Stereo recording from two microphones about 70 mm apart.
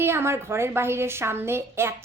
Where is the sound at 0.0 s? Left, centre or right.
Right.